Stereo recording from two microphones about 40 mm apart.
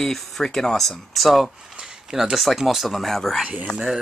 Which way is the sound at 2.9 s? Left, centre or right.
Centre.